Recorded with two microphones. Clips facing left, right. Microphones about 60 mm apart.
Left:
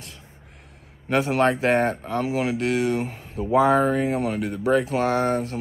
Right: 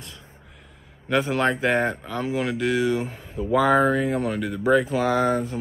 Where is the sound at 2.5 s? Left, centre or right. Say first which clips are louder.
Even; left.